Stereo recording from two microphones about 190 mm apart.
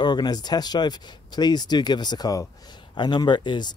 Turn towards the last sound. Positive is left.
turn(degrees=25)  # may be behind; listen again after turning